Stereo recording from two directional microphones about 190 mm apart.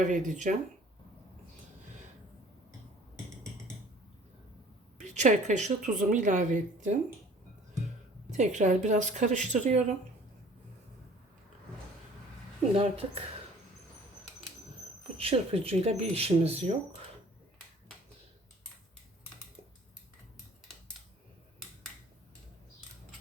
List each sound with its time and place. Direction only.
0.0 s a woman's voice: 40° right (ahead or behind)
4.9 s a woman's voice: 40° right (ahead or behind)
8.3 s a woman's voice: 40° right (ahead or behind)
12.7 s a woman's voice: 30° right (ahead or behind)
15.2 s a woman's voice: 30° right (ahead or behind)